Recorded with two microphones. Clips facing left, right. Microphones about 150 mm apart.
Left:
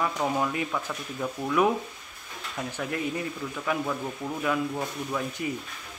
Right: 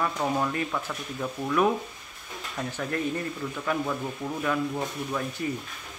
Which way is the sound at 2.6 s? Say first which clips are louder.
Right 1 dB; 10° left (ahead or behind).